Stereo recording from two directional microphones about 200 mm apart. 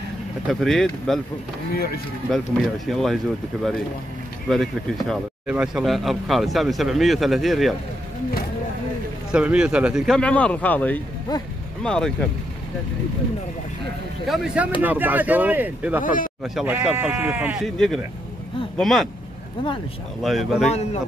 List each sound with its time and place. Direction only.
0.5 s speech: centre (ahead or behind)
2.3 s speech: centre (ahead or behind)
4.5 s speech: centre (ahead or behind)
9.3 s speech: 5° right (ahead or behind)
14.2 s speech: centre (ahead or behind)
16.0 s speech: 40° left (ahead or behind)
16.5 s speech: 5° right (ahead or behind)
20.2 s speech: centre (ahead or behind)